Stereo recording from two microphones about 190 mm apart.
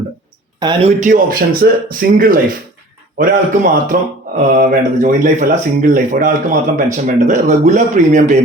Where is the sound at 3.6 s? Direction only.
45° right (ahead or behind).